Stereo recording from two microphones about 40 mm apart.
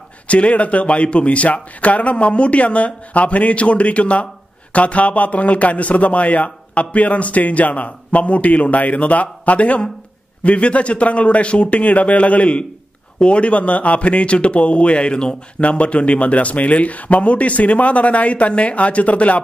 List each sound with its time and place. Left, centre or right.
0.3 s a man's voice: left